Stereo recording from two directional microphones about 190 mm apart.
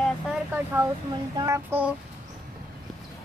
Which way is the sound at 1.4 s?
15° right (ahead or behind).